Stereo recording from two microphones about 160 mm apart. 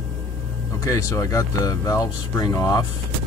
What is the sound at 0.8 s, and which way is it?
Speech, 20° left (ahead or behind).